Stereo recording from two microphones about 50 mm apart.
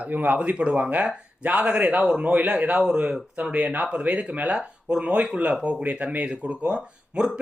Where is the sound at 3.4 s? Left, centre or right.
Right.